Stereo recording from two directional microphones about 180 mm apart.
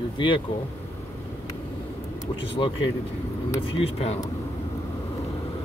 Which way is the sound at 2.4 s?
30° left (ahead or behind).